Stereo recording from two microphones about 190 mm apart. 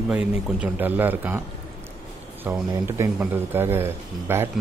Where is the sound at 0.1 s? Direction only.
5° right (ahead or behind).